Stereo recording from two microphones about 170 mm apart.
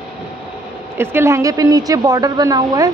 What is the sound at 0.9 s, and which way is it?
A woman's voice, 15° right (ahead or behind).